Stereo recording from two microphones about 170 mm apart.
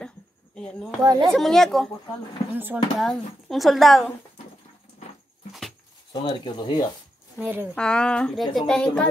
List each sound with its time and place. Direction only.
0.6 s speech: 5° left (ahead or behind)
1.0 s a child's voice: 25° right (ahead or behind)
1.3 s speech: centre (ahead or behind)
2.5 s speech: 10° right (ahead or behind)
3.0 s speech: centre (ahead or behind)
5.5 s dog: centre (ahead or behind)
6.2 s speech: 25° left (ahead or behind)
7.3 s speech: 10° right (ahead or behind)
7.7 s speech: 5° left (ahead or behind)